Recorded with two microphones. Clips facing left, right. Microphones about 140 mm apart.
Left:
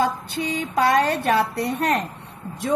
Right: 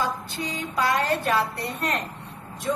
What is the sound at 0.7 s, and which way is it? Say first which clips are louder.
Speech: left 4 dB; 70° left (ahead or behind).